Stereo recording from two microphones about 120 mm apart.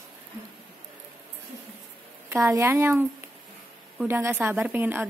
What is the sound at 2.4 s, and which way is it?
Speech, 25° right (ahead or behind).